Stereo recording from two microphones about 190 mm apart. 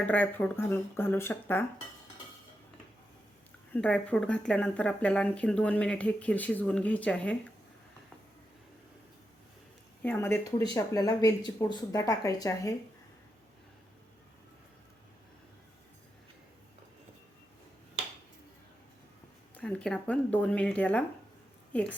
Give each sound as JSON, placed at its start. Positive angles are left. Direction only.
{"t": 0.0, "sound": "speech", "side_deg": 10}
{"t": 3.7, "sound": "speech", "side_deg": 5}
{"t": 10.0, "sound": "speech", "side_deg": 10}
{"t": 19.5, "sound": "a woman's voice", "side_deg": 5}